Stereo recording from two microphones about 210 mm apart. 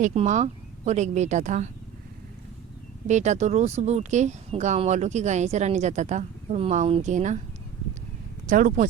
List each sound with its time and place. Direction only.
0.0 s speech: 30° right (ahead or behind)
3.1 s speech: 35° right (ahead or behind)
8.4 s speech: 35° right (ahead or behind)